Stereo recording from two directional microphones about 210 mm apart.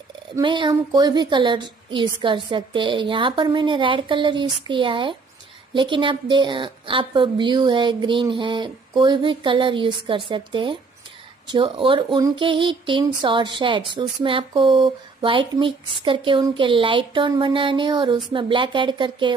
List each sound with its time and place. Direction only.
0.4 s a woman's voice: 20° right (ahead or behind)